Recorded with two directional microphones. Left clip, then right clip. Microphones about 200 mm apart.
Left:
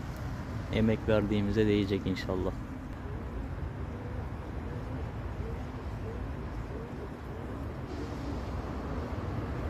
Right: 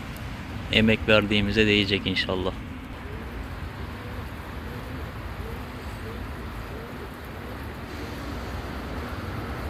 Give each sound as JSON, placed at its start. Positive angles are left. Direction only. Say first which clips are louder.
{"t": 0.7, "sound": "speech", "louder": "right 9 dB", "side_deg": 0}